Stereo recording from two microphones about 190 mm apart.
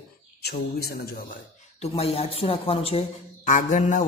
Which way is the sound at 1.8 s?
30° left (ahead or behind).